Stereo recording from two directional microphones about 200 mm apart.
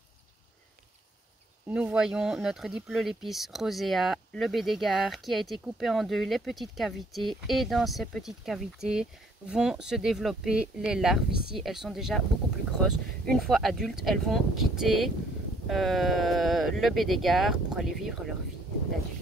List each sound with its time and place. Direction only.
1.7 s speech: 5° right (ahead or behind)
13.2 s speech: centre (ahead or behind)